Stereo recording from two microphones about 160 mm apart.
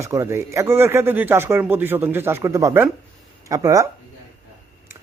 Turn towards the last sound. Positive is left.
turn(degrees=-20)  # may be behind; listen again after turning